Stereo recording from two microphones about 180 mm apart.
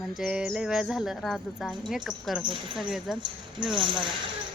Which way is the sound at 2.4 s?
25° right (ahead or behind).